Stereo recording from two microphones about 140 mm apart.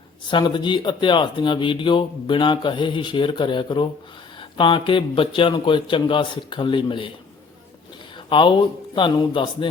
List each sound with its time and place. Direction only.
0.3 s speech: 35° left (ahead or behind)
8.3 s speech: 35° left (ahead or behind)